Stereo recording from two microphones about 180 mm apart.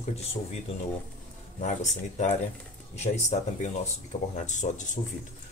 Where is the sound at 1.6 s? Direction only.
40° left (ahead or behind).